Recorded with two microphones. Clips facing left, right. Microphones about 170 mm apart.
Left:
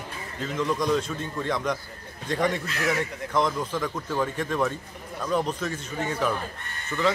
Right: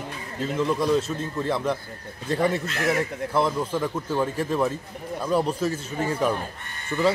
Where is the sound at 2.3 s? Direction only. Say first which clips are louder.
Right 2 dB; 30° right (ahead or behind).